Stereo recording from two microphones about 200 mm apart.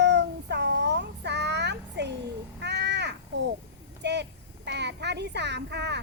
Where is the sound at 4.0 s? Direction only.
60° right (ahead or behind).